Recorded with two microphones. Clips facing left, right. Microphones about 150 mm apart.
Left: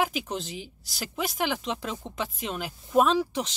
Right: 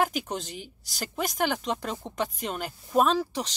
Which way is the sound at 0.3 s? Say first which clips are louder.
Left 1 dB; centre (ahead or behind).